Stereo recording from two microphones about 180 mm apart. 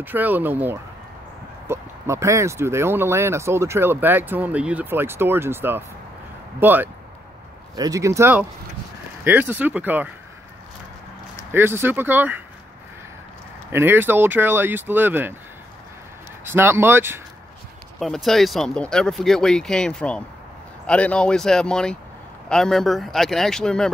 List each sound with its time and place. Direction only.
0.0 s speech: 10° right (ahead or behind)
11.5 s speech: 10° right (ahead or behind)
13.7 s speech: 10° right (ahead or behind)
16.4 s speech: 15° right (ahead or behind)
17.9 s speech: centre (ahead or behind)